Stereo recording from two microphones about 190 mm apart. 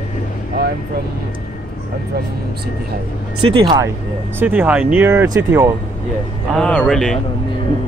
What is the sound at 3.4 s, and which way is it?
Speech, 25° right (ahead or behind).